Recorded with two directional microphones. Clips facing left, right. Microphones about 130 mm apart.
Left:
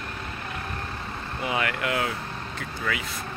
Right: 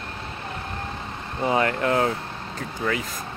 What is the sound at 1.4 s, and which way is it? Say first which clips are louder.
Speech: right 6 dB; 35° right (ahead or behind).